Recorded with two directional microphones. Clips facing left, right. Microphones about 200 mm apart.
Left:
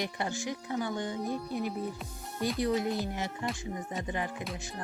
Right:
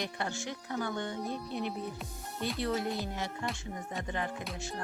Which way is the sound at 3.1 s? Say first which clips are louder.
Left 2 dB; 15° left (ahead or behind).